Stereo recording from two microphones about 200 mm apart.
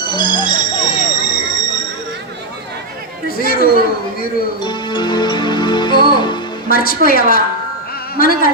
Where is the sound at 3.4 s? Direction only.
50° left (ahead or behind).